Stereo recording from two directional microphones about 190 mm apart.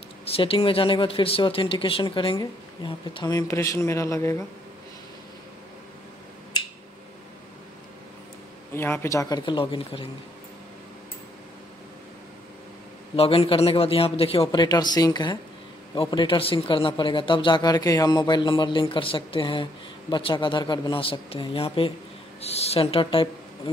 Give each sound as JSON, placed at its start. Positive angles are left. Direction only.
{"t": 0.2, "sound": "a man's voice", "side_deg": 30}
{"t": 8.7, "sound": "a man's voice", "side_deg": 15}
{"t": 13.1, "sound": "a man's voice", "side_deg": 30}